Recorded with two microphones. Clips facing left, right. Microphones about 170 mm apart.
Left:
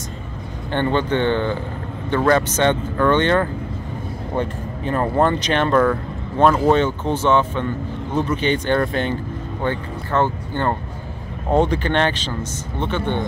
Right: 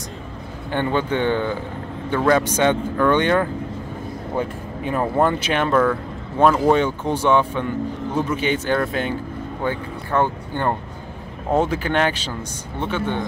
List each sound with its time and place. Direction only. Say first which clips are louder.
0.7 s speech: left 2 dB; 10° right (ahead or behind)